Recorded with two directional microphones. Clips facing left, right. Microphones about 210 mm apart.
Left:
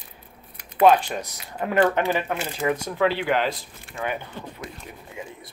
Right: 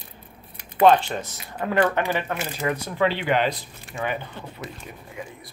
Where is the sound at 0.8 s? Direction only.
10° left (ahead or behind).